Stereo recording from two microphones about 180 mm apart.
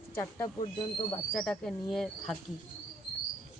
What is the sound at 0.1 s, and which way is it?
Speech, 15° left (ahead or behind).